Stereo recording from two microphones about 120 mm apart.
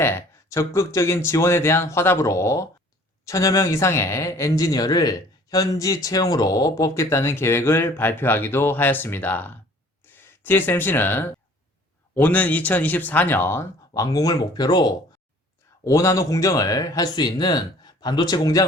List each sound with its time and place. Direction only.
0.0 s speech: 20° left (ahead or behind)